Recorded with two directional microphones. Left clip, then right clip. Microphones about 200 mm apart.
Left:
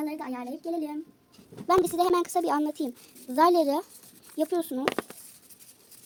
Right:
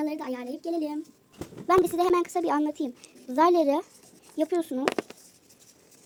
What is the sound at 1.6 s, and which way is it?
A child's voice, centre (ahead or behind).